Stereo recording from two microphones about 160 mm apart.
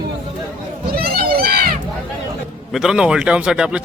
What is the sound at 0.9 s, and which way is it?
Crowd, 70° right (ahead or behind).